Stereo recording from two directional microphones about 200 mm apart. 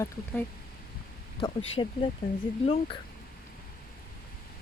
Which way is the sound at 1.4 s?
25° left (ahead or behind).